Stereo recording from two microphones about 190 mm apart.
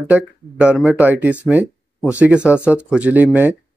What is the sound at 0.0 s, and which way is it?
Speech, 5° right (ahead or behind).